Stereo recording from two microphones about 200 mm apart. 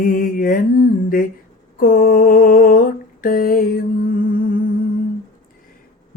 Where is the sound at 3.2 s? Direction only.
45° left (ahead or behind).